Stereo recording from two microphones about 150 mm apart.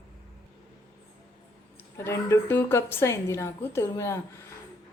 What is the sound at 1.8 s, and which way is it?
A woman's voice, 15° left (ahead or behind).